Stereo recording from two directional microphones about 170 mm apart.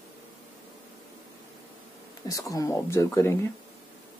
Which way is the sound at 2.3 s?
20° left (ahead or behind).